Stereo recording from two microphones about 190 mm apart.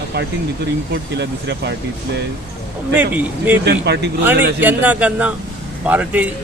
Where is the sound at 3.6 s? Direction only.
60° right (ahead or behind).